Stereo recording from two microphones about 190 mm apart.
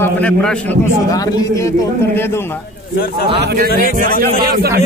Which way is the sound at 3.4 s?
55° right (ahead or behind).